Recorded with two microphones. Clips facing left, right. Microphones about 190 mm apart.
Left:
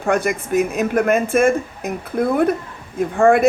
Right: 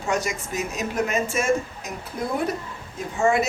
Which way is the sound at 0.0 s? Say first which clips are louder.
Left 7 dB; 55° left (ahead or behind).